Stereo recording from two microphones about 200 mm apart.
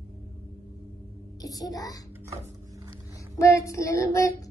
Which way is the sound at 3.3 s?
15° left (ahead or behind).